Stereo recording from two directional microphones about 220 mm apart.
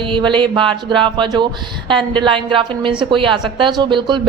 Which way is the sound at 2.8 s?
20° right (ahead or behind).